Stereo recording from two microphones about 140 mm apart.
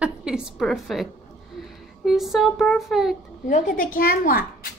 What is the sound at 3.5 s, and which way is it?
Speech, 70° left (ahead or behind).